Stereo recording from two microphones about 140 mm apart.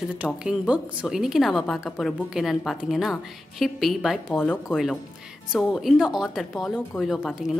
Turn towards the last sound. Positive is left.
turn(degrees=0)  # may be behind; listen again after turning